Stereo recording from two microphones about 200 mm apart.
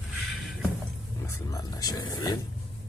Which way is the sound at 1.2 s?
20° left (ahead or behind).